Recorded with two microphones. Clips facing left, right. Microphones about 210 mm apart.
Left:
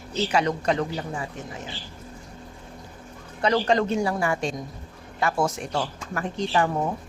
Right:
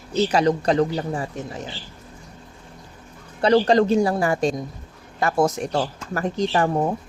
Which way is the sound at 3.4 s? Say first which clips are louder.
Right 5 dB; 35° right (ahead or behind).